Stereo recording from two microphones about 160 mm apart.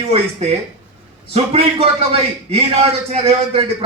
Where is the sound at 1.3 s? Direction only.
40° right (ahead or behind).